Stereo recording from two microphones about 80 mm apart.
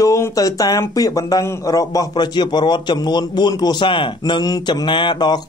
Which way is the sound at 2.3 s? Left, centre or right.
Left.